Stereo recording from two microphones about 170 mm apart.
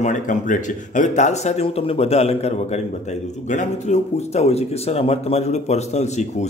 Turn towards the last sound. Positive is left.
turn(degrees=40)  # may be behind; listen again after turning